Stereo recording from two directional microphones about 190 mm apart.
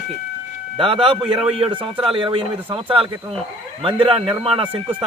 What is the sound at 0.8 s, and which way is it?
Speech, 30° right (ahead or behind).